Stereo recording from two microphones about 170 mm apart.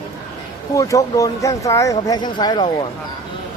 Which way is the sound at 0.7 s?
20° left (ahead or behind).